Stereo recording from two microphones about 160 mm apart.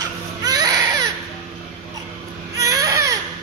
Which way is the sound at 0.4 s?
25° right (ahead or behind).